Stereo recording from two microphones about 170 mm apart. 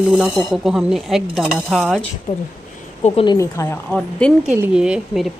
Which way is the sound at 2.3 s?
45° left (ahead or behind).